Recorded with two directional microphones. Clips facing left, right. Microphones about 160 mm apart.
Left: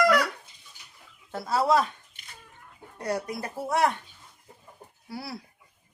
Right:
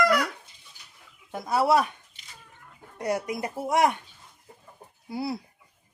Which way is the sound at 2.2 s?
55° left (ahead or behind).